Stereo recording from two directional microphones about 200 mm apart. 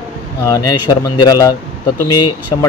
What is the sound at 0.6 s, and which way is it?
A man's voice, 20° left (ahead or behind).